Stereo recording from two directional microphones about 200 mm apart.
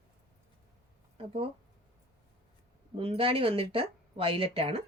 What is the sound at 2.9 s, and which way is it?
Speech, 25° right (ahead or behind).